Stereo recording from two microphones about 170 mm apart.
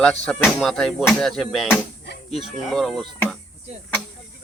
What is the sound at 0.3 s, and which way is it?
Speech, 5° left (ahead or behind).